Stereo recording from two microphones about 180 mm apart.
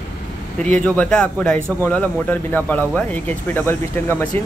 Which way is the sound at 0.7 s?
5° left (ahead or behind).